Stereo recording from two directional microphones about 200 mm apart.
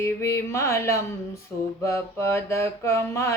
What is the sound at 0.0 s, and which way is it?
Mantra, 15° left (ahead or behind).